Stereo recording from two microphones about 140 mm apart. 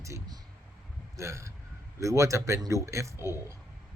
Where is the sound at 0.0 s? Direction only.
20° right (ahead or behind).